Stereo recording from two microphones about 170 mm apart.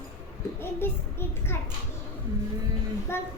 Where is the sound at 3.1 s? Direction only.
15° left (ahead or behind).